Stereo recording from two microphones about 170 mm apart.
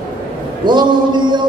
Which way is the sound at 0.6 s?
25° right (ahead or behind).